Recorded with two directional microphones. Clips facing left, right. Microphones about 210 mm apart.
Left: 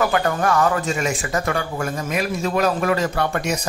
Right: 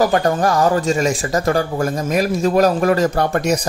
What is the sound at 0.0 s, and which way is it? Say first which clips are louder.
Speech: right 4 dB; 35° right (ahead or behind).